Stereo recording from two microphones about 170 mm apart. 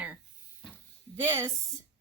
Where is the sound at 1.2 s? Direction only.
15° right (ahead or behind).